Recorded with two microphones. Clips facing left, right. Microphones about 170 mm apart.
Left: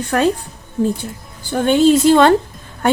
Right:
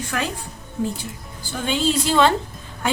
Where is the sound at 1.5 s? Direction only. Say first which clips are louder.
Left 10 dB; 50° left (ahead or behind).